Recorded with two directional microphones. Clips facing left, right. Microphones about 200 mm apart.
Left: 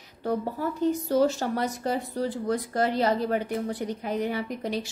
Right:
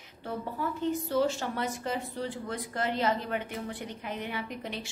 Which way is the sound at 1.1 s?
40° left (ahead or behind).